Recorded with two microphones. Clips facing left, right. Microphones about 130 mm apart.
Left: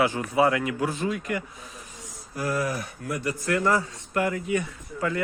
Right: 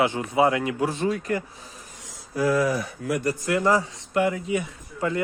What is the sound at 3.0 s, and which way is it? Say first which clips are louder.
Speech: right 5 dB; 90° right.